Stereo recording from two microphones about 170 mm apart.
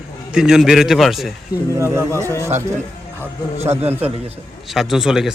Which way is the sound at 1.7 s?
15° right (ahead or behind).